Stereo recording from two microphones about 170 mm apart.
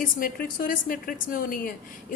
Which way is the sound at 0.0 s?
55° left (ahead or behind).